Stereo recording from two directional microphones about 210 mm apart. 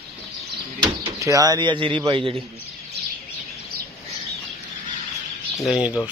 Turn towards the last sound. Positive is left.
turn(degrees=-5)  # may be behind; listen again after turning